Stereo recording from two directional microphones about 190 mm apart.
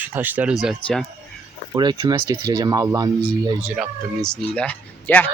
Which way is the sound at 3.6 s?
Centre (ahead or behind).